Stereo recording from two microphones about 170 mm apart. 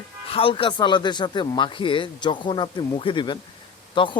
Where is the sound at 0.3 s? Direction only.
35° left (ahead or behind).